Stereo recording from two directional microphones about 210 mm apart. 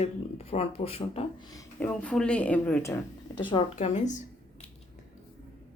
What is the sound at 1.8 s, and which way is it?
Speech, 5° left (ahead or behind).